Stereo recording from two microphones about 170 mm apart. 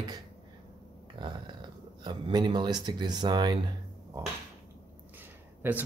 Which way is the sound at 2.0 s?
25° right (ahead or behind).